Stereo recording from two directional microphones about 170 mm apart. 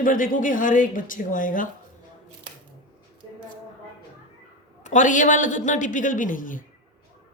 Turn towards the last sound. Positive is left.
turn(degrees=50)  # may be behind; listen again after turning